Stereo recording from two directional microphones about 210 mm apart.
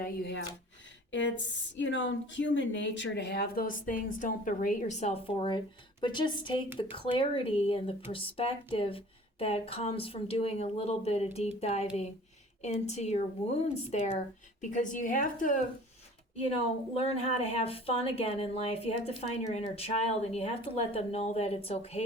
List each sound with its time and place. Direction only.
0.0 s a woman's voice: 55° left (ahead or behind)
16.5 s a woman's voice: 30° left (ahead or behind)